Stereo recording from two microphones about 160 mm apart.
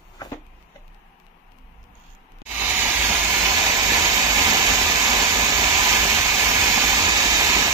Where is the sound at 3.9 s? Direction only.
20° right (ahead or behind).